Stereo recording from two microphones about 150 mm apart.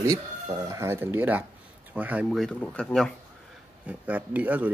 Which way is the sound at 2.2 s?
5° left (ahead or behind).